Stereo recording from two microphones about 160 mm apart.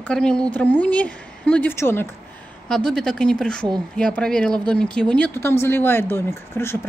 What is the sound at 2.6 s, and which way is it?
Speech, 5° left (ahead or behind).